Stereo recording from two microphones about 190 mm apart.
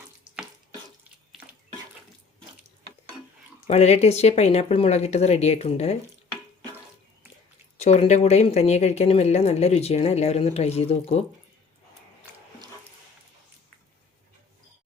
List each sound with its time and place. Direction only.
3.7 s speech: 35° left (ahead or behind)
7.8 s speech: 35° left (ahead or behind)